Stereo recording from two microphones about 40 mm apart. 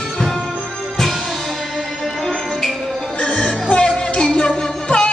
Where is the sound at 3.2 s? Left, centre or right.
Left.